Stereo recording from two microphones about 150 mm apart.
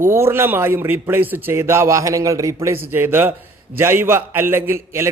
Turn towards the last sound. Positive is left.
turn(degrees=-15)  # may be behind; listen again after turning